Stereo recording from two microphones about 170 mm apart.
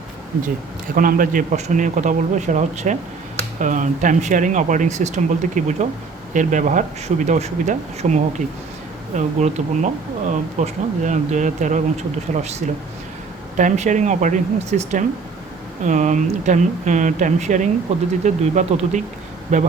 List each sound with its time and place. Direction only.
0.9 s speech: 55° right (ahead or behind)